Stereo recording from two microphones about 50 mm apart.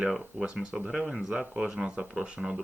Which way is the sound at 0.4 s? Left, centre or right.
Centre.